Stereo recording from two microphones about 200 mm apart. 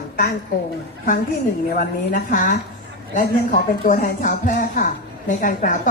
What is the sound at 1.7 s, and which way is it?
Speech, 45° left (ahead or behind).